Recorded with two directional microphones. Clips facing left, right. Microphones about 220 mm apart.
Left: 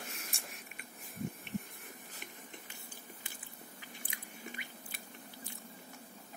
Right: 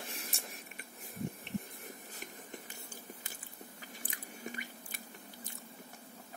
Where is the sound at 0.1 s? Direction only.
35° right (ahead or behind).